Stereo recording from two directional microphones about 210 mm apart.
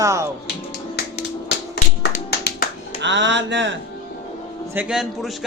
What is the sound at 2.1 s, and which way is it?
Tap, 45° left (ahead or behind).